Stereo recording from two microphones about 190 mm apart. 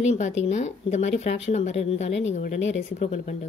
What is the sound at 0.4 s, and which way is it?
Speech, 35° left (ahead or behind).